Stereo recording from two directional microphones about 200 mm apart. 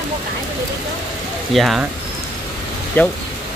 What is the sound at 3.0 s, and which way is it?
Speech, 10° left (ahead or behind).